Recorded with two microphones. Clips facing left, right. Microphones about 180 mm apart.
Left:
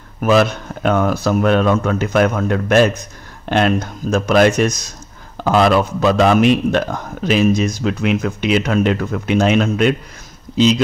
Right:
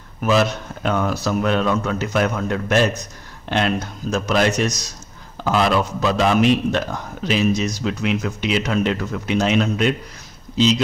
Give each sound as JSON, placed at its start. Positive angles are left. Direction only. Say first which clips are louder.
{"t": 0.2, "sound": "a man's voice", "louder": "left 4 dB", "side_deg": 55}